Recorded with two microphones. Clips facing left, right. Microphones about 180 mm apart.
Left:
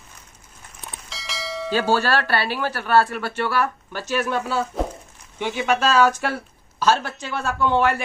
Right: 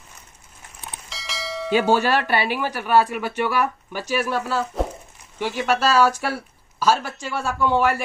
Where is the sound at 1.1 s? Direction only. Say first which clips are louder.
Even; centre (ahead or behind).